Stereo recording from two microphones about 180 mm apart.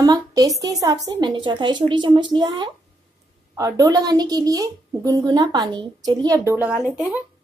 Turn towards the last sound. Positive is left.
turn(degrees=-5)  # may be behind; listen again after turning